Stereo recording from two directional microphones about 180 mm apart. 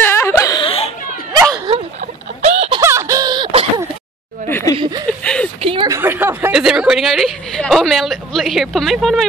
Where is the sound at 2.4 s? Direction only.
35° right (ahead or behind).